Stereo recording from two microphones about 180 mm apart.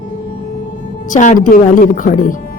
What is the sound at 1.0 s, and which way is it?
A woman's voice, 45° left (ahead or behind).